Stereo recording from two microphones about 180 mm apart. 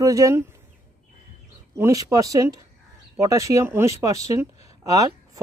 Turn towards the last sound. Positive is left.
turn(degrees=-20)  # may be behind; listen again after turning